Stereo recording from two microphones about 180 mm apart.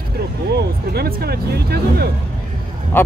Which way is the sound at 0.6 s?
60° right (ahead or behind).